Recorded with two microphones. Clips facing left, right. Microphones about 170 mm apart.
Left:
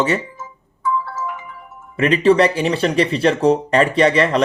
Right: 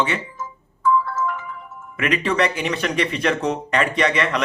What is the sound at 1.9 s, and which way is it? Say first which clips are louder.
Speech: left 8 dB; 30° left (ahead or behind).